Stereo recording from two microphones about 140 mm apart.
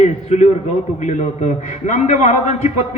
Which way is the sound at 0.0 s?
55° left (ahead or behind).